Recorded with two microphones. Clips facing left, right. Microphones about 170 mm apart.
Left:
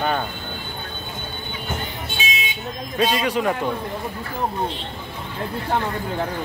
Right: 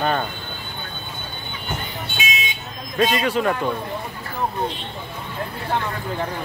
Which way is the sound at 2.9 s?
10° left (ahead or behind).